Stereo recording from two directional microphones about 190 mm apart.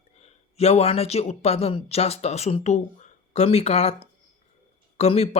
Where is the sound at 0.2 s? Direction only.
35° left (ahead or behind).